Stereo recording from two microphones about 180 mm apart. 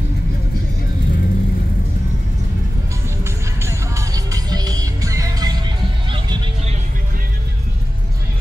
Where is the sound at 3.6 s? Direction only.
15° right (ahead or behind).